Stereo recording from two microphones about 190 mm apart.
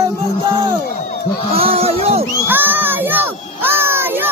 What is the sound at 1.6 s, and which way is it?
Speech, 30° right (ahead or behind).